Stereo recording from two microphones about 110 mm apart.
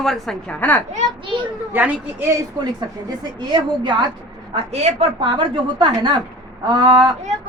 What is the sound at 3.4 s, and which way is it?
Speech, 45° right (ahead or behind).